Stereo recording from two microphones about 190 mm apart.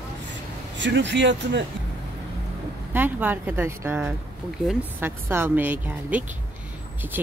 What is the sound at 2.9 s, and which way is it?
Speech, 10° right (ahead or behind).